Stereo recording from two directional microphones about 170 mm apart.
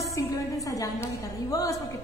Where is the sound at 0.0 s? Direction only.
20° left (ahead or behind).